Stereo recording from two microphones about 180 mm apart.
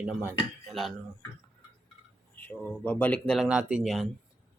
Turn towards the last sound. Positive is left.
turn(degrees=0)  # may be behind; listen again after turning